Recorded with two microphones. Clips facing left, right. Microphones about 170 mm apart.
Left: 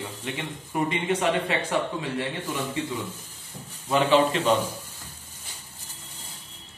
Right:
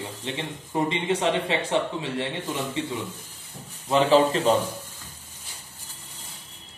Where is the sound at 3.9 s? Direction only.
35° right (ahead or behind).